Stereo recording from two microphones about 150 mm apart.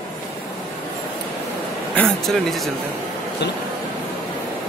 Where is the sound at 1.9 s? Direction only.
5° left (ahead or behind).